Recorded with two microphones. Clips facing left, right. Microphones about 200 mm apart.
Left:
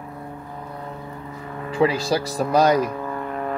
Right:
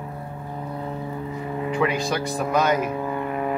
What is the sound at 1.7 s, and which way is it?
Speech, 30° left (ahead or behind).